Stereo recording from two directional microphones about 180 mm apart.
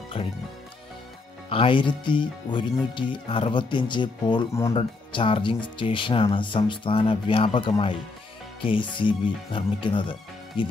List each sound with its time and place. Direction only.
0.2 s speech: 30° left (ahead or behind)
1.5 s speech: 30° left (ahead or behind)